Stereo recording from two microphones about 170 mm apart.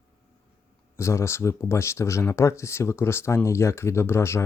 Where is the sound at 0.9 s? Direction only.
15° left (ahead or behind).